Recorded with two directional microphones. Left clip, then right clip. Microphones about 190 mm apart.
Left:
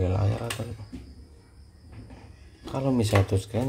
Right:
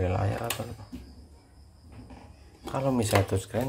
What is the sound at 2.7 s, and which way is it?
Speech, 20° left (ahead or behind).